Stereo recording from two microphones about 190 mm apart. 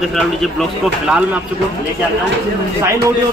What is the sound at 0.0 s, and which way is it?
Speech, centre (ahead or behind).